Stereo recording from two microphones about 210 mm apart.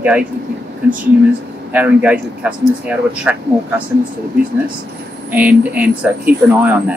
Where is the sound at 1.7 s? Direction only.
5° right (ahead or behind).